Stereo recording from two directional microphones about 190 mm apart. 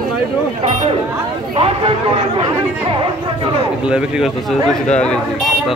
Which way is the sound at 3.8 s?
5° right (ahead or behind).